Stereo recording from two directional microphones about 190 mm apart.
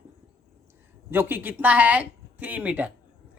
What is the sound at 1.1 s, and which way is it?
Speech, 10° right (ahead or behind).